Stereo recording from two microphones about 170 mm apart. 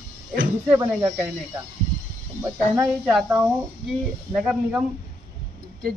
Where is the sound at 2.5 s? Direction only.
5° right (ahead or behind).